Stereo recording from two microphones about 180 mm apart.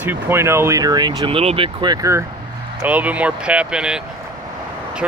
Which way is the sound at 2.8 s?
10° right (ahead or behind).